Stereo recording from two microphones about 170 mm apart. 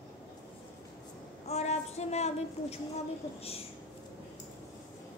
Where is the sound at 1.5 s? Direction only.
40° left (ahead or behind).